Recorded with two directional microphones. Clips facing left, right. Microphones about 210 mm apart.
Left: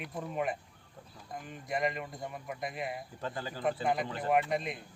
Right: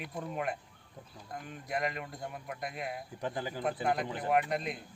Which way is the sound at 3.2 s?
15° right (ahead or behind).